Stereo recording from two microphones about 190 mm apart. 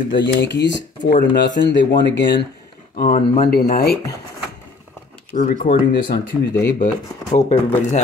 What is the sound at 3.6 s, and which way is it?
Speech, 50° left (ahead or behind).